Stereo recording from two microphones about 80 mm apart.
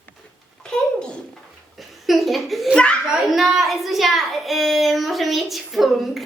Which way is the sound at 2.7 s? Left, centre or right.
Centre.